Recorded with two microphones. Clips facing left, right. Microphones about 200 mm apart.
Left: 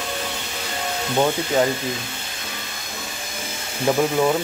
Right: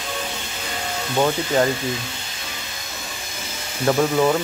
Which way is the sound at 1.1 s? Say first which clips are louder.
Even; 15° left (ahead or behind).